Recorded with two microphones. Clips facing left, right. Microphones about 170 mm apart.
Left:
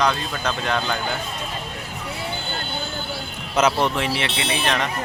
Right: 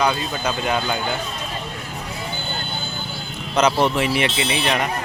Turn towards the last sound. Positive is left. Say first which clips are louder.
# right 2 dB
turn(degrees=-10)  # may be behind; listen again after turning